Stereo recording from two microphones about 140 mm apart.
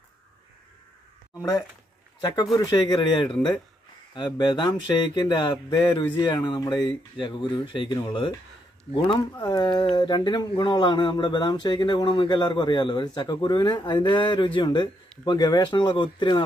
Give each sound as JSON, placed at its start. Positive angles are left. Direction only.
{"t": 2.5, "sound": "speech", "side_deg": 25}